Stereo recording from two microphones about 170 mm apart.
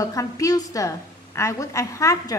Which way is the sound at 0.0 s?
20° left (ahead or behind).